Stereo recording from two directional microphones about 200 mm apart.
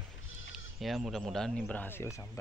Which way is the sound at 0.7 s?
Centre (ahead or behind).